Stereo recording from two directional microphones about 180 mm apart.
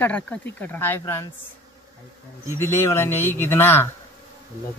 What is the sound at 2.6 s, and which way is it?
A man's voice, 15° left (ahead or behind).